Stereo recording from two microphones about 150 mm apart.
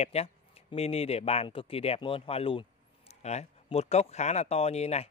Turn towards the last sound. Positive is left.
turn(degrees=45)  # may be behind; listen again after turning